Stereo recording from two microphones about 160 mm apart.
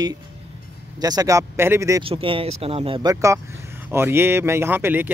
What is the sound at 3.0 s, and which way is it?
Speech, 20° right (ahead or behind).